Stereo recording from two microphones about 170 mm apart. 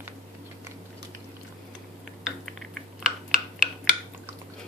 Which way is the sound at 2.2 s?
5° right (ahead or behind).